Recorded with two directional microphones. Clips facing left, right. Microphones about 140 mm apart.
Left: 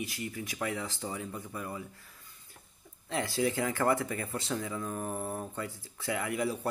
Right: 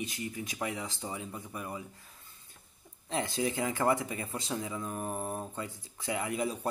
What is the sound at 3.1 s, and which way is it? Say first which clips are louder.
Speech: left 1 dB; 20° right (ahead or behind).